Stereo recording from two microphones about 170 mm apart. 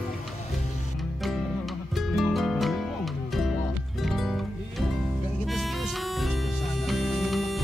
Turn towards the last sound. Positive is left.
turn(degrees=0)  # may be behind; listen again after turning